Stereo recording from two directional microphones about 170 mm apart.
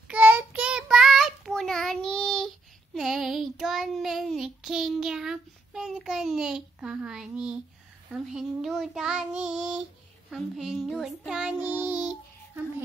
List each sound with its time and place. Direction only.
0.1 s child singing: 10° right (ahead or behind)